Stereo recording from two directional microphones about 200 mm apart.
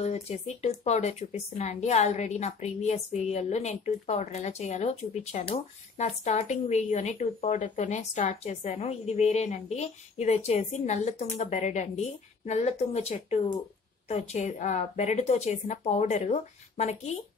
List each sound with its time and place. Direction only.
0.0 s a woman's voice: 35° left (ahead or behind)